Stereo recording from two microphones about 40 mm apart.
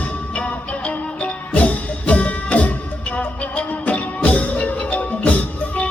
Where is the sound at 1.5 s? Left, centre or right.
Left.